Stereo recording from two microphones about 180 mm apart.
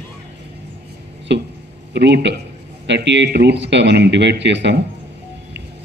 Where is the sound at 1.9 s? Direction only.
70° right (ahead or behind).